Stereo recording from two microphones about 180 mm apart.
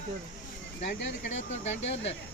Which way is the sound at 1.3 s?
40° left (ahead or behind).